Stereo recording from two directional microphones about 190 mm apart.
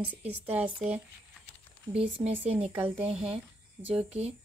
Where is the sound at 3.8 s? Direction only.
30° right (ahead or behind).